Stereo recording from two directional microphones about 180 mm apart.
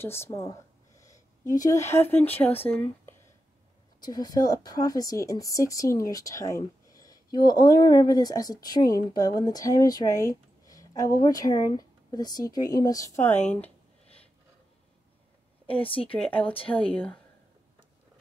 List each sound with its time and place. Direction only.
0.0 s speech: 15° left (ahead or behind)
15.9 s a woman's voice: 30° left (ahead or behind)
16.9 s speech: 10° left (ahead or behind)